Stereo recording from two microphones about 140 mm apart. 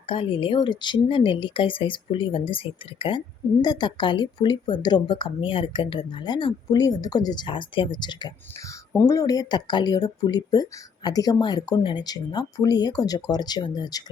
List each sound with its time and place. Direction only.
0.1 s speech: 40° left (ahead or behind)